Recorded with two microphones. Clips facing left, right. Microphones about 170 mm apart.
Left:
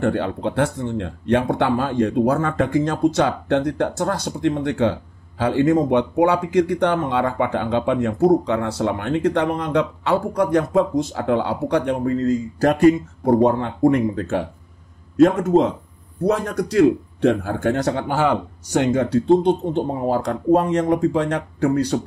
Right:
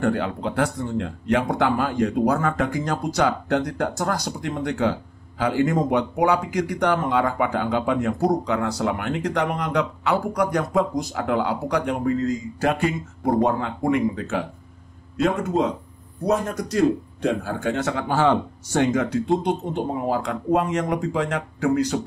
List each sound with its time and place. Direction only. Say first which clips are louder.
0.0 s speech: left 2 dB; 30° left (ahead or behind)
16.3 s speech: left 2 dB; 65° left (ahead or behind)
17.4 s speech: left 4 dB; 55° left (ahead or behind)
18.0 s speech: even; 15° left (ahead or behind)
18.9 s speech: left 5 dB; 30° left (ahead or behind)